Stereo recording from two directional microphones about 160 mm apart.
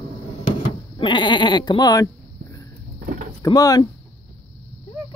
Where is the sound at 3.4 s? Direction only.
25° left (ahead or behind).